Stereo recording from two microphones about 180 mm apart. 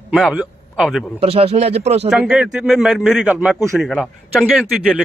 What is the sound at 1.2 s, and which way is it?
Speech, 35° right (ahead or behind).